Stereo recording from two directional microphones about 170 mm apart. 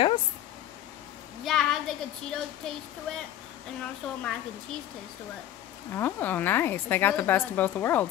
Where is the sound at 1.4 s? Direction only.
Centre (ahead or behind).